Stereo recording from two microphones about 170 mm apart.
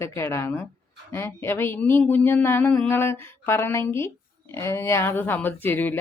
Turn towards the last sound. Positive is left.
turn(degrees=10)  # may be behind; listen again after turning